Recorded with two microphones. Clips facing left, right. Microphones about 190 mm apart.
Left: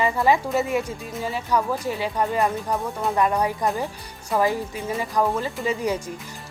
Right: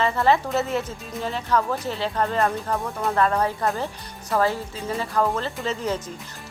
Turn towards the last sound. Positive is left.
turn(degrees=10)  # may be behind; listen again after turning